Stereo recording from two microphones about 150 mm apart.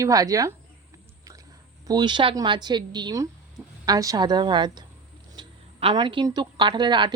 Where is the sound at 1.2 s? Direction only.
25° right (ahead or behind).